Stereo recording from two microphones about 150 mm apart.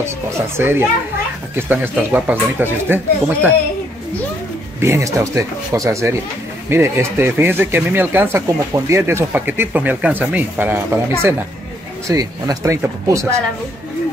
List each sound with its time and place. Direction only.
0.6 s speech: 15° right (ahead or behind)
4.7 s speech: 15° right (ahead or behind)